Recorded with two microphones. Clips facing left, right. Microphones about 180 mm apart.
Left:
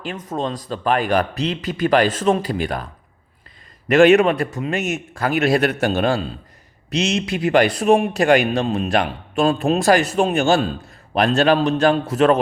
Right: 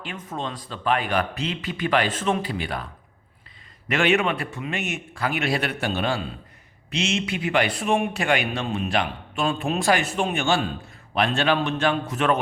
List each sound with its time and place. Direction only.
0.0 s a man's voice: 40° left (ahead or behind)
3.8 s a man's voice: 45° left (ahead or behind)